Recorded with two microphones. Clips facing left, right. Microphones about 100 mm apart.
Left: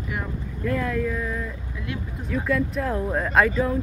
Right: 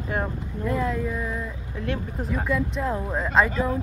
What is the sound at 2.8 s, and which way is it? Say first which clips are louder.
Speech: left 2 dB; 15° right (ahead or behind).